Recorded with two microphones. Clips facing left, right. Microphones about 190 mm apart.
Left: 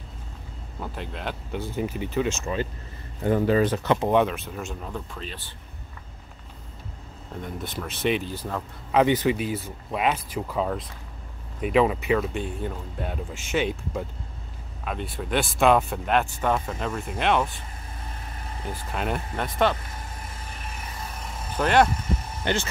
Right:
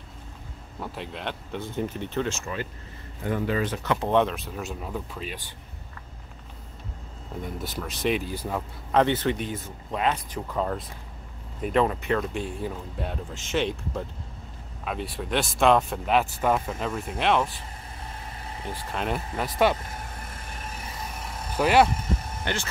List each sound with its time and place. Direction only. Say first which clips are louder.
0.7 s speech: even; centre (ahead or behind)
2.2 s speech: left 4 dB; 20° left (ahead or behind); by 3.8 s 40° left (ahead or behind)
3.8 s speech: left 4 dB; 25° left (ahead or behind)
4.1 s speech: left 1 dB; 5° left (ahead or behind)
7.4 s speech: left 1 dB; centre (ahead or behind)
8.3 s speech: right 1 dB; 10° right (ahead or behind)
8.9 s speech: left 2 dB; 10° left (ahead or behind)
18.9 s speech: even; centre (ahead or behind)
21.5 s speech: even; 5° right (ahead or behind)
22.4 s speech: left 8 dB; 20° left (ahead or behind)